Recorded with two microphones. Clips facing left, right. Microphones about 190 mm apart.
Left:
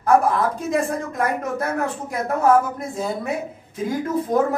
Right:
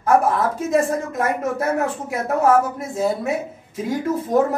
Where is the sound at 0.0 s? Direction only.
5° right (ahead or behind).